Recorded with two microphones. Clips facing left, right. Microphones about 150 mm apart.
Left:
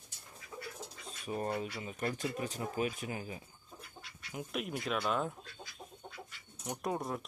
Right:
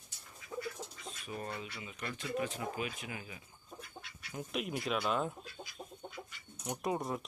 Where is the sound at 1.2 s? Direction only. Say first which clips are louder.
Left 7 dB; 40° left (ahead or behind).